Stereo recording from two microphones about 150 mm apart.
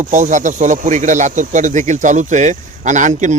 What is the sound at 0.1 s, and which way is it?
Speech, 55° right (ahead or behind).